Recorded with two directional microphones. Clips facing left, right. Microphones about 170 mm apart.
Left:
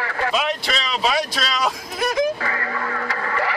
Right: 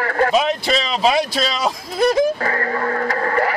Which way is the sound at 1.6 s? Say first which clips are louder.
Right 6 dB; 35° right (ahead or behind).